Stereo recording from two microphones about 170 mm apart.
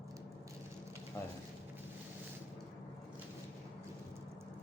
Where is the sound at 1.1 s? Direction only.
15° left (ahead or behind).